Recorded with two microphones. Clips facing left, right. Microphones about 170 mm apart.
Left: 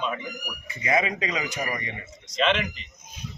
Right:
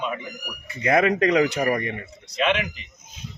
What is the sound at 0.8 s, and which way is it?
Speech, 60° right (ahead or behind).